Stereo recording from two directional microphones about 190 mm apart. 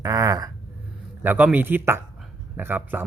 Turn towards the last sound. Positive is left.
turn(degrees=-10)  # may be behind; listen again after turning